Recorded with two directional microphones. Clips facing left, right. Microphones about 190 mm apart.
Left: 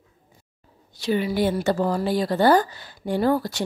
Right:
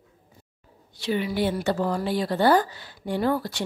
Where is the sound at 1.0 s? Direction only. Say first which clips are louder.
Left 3 dB; 40° left (ahead or behind).